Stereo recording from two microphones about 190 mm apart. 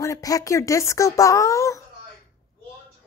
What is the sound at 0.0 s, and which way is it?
Speech, 20° left (ahead or behind).